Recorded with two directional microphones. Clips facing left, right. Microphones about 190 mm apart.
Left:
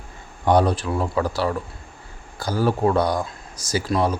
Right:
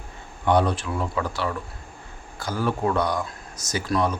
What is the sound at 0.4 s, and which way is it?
A man's voice, 35° left (ahead or behind).